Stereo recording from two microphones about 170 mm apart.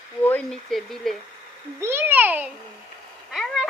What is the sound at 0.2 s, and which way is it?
Speech, 10° left (ahead or behind).